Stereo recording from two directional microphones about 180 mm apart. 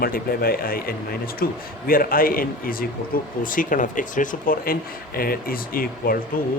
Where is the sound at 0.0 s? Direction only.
55° left (ahead or behind).